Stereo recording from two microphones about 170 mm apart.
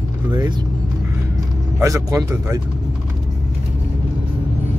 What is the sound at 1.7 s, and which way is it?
Speech, 20° right (ahead or behind).